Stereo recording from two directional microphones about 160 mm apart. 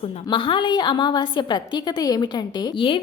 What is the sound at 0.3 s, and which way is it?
A woman's voice, 30° left (ahead or behind).